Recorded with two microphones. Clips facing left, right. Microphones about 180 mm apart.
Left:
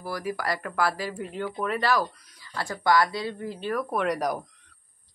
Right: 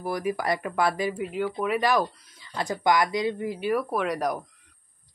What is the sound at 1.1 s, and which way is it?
A woman's voice, 5° right (ahead or behind).